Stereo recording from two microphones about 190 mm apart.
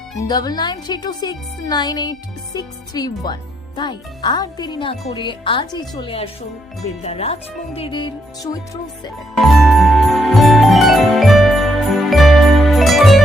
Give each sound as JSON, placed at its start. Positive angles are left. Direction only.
{"t": 0.3, "sound": "speech", "side_deg": 20}
{"t": 9.4, "sound": "jingle bell", "side_deg": 0}